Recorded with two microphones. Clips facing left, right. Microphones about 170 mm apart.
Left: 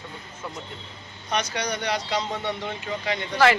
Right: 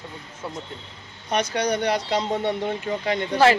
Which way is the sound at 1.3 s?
50° right (ahead or behind).